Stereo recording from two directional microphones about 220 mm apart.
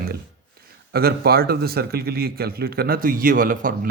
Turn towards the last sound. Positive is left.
turn(degrees=-40)  # may be behind; listen again after turning